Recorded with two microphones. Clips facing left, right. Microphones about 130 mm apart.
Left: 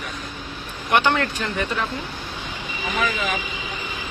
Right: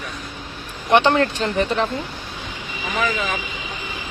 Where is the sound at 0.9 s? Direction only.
30° right (ahead or behind).